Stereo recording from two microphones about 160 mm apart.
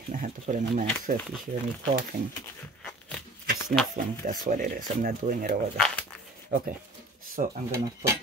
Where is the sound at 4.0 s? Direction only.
60° right (ahead or behind).